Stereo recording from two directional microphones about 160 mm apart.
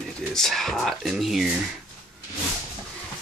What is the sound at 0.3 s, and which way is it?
Speech, centre (ahead or behind).